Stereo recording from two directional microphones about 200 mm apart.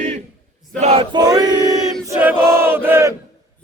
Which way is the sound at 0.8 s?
25° right (ahead or behind).